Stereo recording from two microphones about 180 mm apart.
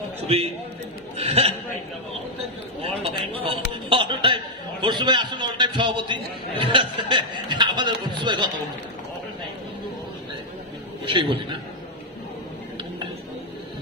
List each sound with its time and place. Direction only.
0.3 s a man's voice: 35° right (ahead or behind)
2.8 s a sound: 35° right (ahead or behind)
6.6 s chuckle: 30° right (ahead or behind)
11.1 s speech: 30° right (ahead or behind)